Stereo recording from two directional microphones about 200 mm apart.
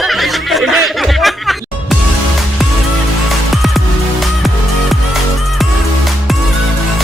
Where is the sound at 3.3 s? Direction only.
Centre (ahead or behind).